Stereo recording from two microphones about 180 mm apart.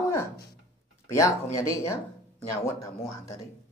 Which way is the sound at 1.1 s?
15° left (ahead or behind).